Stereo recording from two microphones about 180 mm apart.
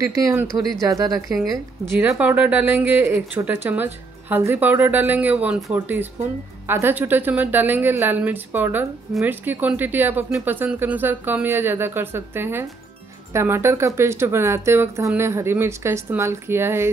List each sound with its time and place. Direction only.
0.1 s speech: 15° right (ahead or behind)
2.0 s speech: 10° right (ahead or behind)